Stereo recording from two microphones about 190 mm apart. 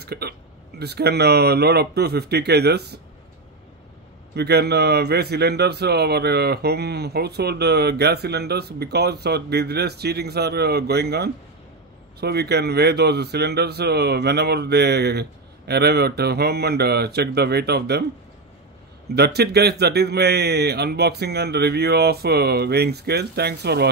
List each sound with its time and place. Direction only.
0.0 s a man's voice: 55° right (ahead or behind)
4.3 s a man's voice: 60° right (ahead or behind)
19.1 s a man's voice: 60° right (ahead or behind)